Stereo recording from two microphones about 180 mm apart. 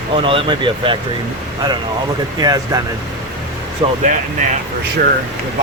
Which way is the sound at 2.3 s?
20° right (ahead or behind).